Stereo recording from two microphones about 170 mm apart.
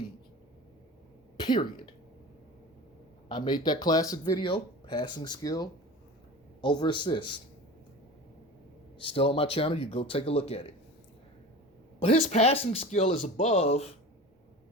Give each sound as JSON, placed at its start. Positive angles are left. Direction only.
{"t": 1.4, "sound": "speech", "side_deg": 25}
{"t": 3.2, "sound": "speech", "side_deg": 25}
{"t": 9.0, "sound": "speech", "side_deg": 35}
{"t": 11.9, "sound": "speech", "side_deg": 35}